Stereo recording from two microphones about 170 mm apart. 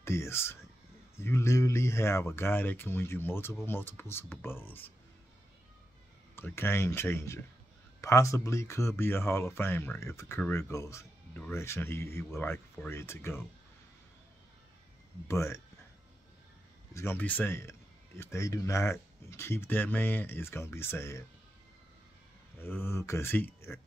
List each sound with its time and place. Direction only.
0.0 s speech: 15° left (ahead or behind)
6.3 s speech: 15° left (ahead or behind)
15.2 s speech: 15° left (ahead or behind)
16.9 s speech: 15° left (ahead or behind)
22.6 s speech: 15° left (ahead or behind)